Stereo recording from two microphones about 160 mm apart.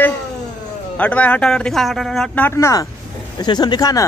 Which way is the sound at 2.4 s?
20° left (ahead or behind).